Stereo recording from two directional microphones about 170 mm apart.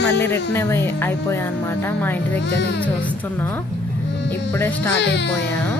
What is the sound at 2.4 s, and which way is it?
Speech, 90° left.